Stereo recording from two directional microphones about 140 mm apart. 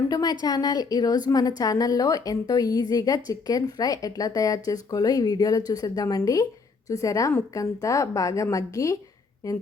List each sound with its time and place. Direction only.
0.1 s a woman's voice: 25° left (ahead or behind)